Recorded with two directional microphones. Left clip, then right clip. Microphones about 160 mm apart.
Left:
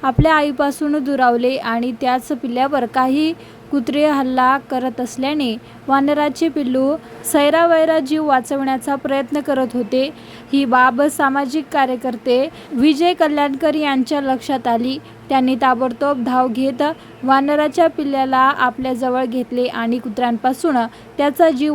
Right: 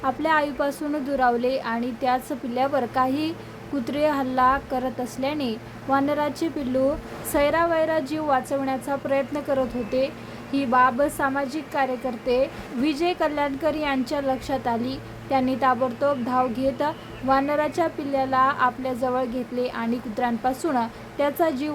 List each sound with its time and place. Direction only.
0.0 s a woman's voice: 45° left (ahead or behind)